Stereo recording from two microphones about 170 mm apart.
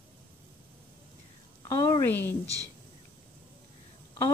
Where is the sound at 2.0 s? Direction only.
15° left (ahead or behind).